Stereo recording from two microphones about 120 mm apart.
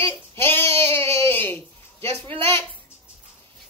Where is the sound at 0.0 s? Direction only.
20° left (ahead or behind).